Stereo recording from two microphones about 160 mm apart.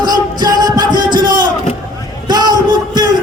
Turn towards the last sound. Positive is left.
turn(degrees=-25)  # may be behind; listen again after turning